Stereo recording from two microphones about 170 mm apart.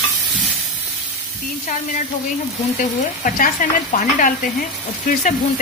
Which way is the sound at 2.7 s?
50° left (ahead or behind).